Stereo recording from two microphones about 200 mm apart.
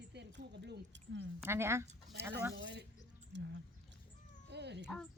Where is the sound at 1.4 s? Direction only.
10° right (ahead or behind).